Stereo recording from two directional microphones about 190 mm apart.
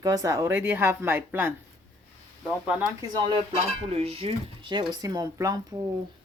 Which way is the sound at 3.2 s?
25° right (ahead or behind).